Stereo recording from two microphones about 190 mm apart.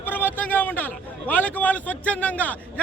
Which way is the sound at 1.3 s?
10° left (ahead or behind).